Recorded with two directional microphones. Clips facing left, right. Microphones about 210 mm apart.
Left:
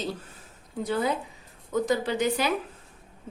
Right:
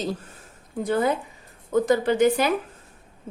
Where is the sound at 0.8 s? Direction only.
50° right (ahead or behind).